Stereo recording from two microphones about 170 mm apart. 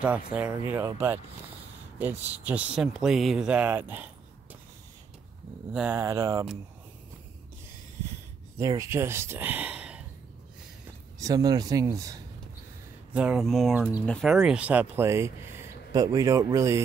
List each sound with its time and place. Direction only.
0.5 s speech: 15° right (ahead or behind)
5.7 s speech: 5° right (ahead or behind)
5.9 s speech: 15° right (ahead or behind)
8.5 s speech: 15° right (ahead or behind)
11.1 s speech: 20° right (ahead or behind)
13.1 s speech: 5° right (ahead or behind)
13.7 s speech: 10° right (ahead or behind)
14.0 s speech: 5° left (ahead or behind)
14.3 s speech: 5° right (ahead or behind)